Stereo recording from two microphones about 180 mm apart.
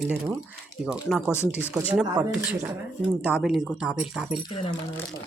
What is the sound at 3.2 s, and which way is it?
Speech, 5° right (ahead or behind).